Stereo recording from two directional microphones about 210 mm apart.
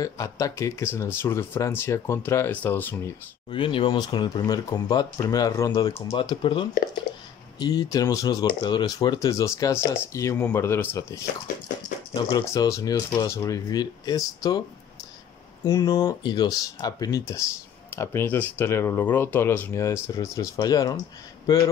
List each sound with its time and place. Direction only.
0.0 s speech: 15° left (ahead or behind)
3.4 s speech: 25° left (ahead or behind)
15.6 s speech: 15° left (ahead or behind)